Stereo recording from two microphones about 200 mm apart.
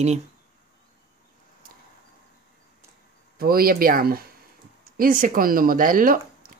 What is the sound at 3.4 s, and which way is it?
Speech, 50° right (ahead or behind).